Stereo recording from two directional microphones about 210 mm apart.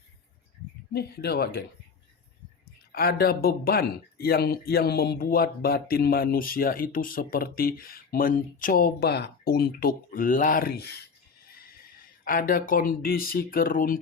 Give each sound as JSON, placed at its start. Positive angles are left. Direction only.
{"t": 0.9, "sound": "speech", "side_deg": 50}
{"t": 2.9, "sound": "speech", "side_deg": 45}
{"t": 12.2, "sound": "speech", "side_deg": 40}